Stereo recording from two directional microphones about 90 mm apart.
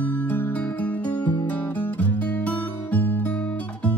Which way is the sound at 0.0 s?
20° left (ahead or behind).